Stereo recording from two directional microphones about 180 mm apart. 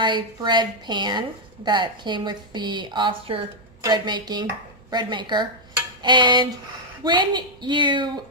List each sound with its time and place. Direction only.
0.0 s a woman's voice: 25° right (ahead or behind)